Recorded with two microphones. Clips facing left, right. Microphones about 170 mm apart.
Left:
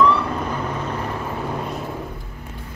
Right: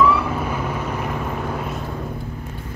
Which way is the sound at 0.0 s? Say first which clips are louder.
Even; 5° right (ahead or behind).